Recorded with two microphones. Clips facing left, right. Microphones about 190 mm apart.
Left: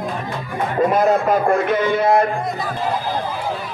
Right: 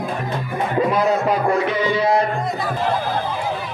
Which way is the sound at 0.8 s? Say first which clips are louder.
Left 3 dB; 50° left (ahead or behind).